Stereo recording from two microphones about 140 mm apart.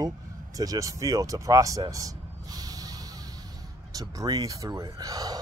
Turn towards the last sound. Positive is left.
turn(degrees=-25)  # may be behind; listen again after turning